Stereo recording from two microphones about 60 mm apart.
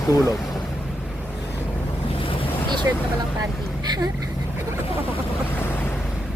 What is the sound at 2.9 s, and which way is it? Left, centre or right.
Speech, right.